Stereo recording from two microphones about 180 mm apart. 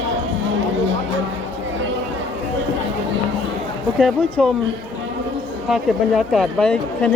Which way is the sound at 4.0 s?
5° left (ahead or behind).